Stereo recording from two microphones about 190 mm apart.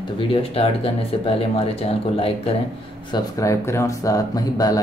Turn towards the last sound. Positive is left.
turn(degrees=20)  # may be behind; listen again after turning